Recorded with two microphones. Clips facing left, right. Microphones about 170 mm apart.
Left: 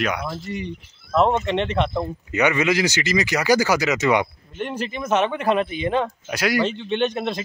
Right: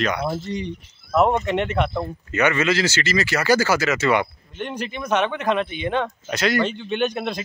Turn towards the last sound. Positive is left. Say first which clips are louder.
# left 1 dB
turn(degrees=0)  # may be behind; listen again after turning